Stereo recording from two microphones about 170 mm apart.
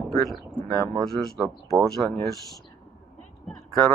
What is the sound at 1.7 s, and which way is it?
Speech, 20° right (ahead or behind).